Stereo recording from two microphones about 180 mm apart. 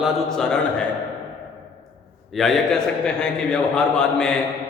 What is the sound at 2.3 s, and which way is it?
A man's voice, centre (ahead or behind).